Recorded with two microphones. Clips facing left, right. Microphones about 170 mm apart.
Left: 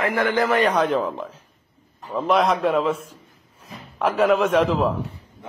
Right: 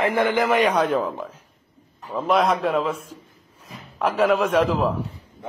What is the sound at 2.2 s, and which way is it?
Speech, centre (ahead or behind).